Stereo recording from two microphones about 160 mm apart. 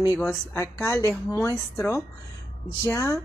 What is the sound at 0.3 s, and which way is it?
Speech, 15° left (ahead or behind).